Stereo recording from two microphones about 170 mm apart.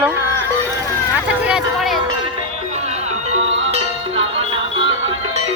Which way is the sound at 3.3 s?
40° right (ahead or behind).